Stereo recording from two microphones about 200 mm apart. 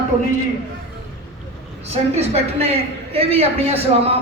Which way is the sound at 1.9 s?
30° right (ahead or behind).